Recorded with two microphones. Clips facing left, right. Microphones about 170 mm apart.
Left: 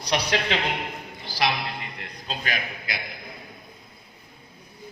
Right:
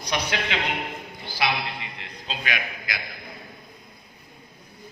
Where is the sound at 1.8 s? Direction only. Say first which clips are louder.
Left 1 dB; 45° left (ahead or behind); by 3.0 s 30° left (ahead or behind).